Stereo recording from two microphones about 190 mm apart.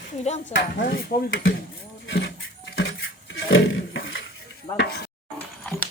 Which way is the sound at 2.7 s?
85° left.